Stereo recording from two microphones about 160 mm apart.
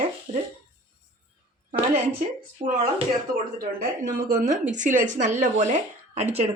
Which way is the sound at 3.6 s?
65° right (ahead or behind).